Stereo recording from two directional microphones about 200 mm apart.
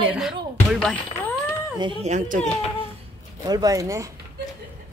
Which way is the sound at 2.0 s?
40° right (ahead or behind).